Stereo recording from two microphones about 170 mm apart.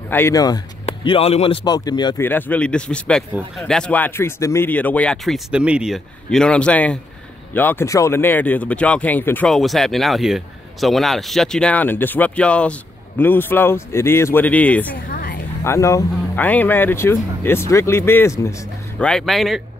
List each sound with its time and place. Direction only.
0.1 s speech: 15° left (ahead or behind)
0.8 s speech: 35° left (ahead or behind)
2.2 s speech: 10° left (ahead or behind)
15.0 s a sound: 60° left (ahead or behind)
15.6 s speech: 15° left (ahead or behind)
18.9 s speech: 5° left (ahead or behind)